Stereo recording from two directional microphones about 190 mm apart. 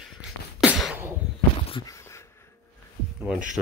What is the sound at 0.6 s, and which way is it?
Beatboxing, centre (ahead or behind).